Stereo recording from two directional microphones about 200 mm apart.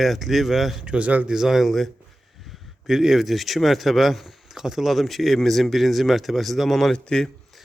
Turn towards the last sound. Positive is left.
turn(degrees=5)  # may be behind; listen again after turning